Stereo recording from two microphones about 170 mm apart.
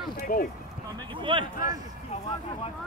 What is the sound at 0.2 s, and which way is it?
Speech, 55° left (ahead or behind).